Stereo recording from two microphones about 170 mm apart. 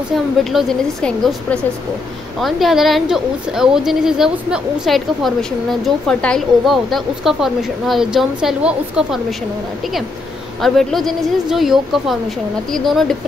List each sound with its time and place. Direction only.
0.1 s a woman's voice: centre (ahead or behind)
10.6 s a woman's voice: centre (ahead or behind)